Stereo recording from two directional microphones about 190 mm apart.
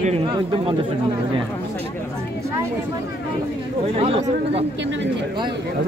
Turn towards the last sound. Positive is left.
turn(degrees=-30)  # may be behind; listen again after turning